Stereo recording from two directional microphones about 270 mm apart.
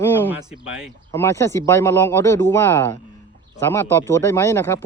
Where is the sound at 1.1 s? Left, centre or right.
Centre.